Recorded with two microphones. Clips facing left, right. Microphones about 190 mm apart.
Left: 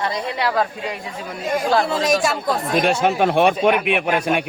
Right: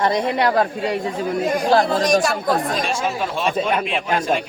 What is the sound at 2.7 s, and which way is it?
A man's voice, 65° left (ahead or behind).